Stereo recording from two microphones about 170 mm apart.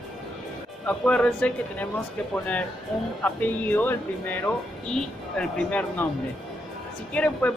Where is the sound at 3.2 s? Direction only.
10° left (ahead or behind).